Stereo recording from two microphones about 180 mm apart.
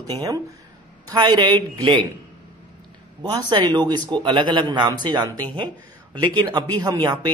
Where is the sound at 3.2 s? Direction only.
25° right (ahead or behind).